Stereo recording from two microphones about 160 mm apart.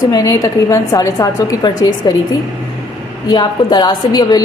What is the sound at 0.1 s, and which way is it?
A woman's voice, 20° left (ahead or behind).